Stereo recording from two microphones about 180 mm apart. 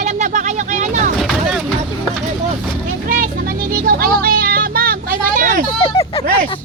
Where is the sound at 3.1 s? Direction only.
50° right (ahead or behind).